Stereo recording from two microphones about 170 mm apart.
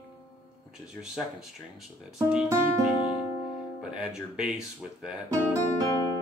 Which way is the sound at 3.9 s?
5° right (ahead or behind).